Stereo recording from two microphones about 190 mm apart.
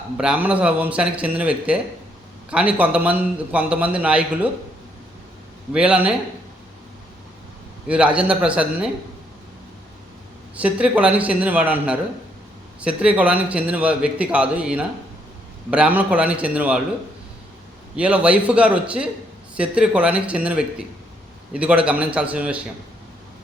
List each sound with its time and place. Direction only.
0.2 s a man's voice: 5° right (ahead or behind)
5.7 s a man's voice: 5° right (ahead or behind)
7.9 s a man's voice: 5° right (ahead or behind)
10.5 s a man's voice: 5° right (ahead or behind)
17.9 s a man's voice: 5° right (ahead or behind)